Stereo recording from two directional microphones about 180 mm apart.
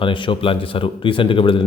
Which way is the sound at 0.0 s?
30° left (ahead or behind).